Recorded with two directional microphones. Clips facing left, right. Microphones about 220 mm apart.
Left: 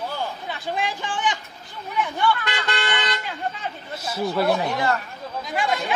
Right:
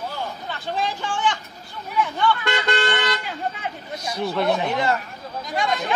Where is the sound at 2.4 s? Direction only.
45° right (ahead or behind).